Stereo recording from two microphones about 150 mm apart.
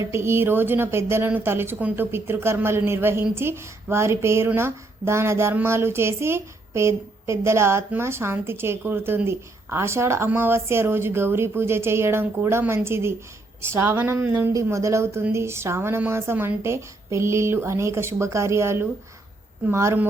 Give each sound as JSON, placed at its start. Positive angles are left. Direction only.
{"t": 0.1, "sound": "speech", "side_deg": -15}